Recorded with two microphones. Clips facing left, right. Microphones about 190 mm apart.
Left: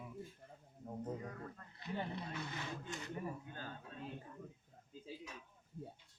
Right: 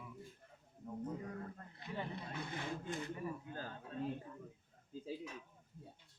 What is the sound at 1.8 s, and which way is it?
Speech, 55° right (ahead or behind).